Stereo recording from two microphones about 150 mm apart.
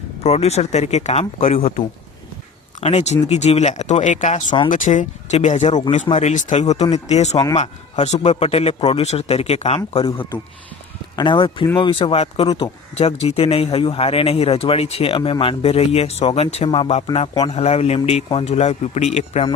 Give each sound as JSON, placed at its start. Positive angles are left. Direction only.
{"t": 0.2, "sound": "a man's voice", "side_deg": 45}
{"t": 2.8, "sound": "a man's voice", "side_deg": 45}
{"t": 11.2, "sound": "speech", "side_deg": 30}
{"t": 12.5, "sound": "speech", "side_deg": 25}
{"t": 13.0, "sound": "speech", "side_deg": 45}
{"t": 16.6, "sound": "a man's voice", "side_deg": 35}